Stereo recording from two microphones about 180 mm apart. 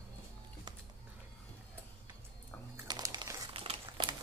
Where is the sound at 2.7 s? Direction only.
20° right (ahead or behind).